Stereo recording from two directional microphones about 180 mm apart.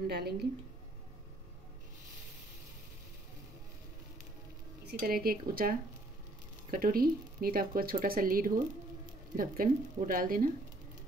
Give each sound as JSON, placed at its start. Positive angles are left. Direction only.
{"t": 0.0, "sound": "speech", "side_deg": -60}
{"t": 5.0, "sound": "speech", "side_deg": -55}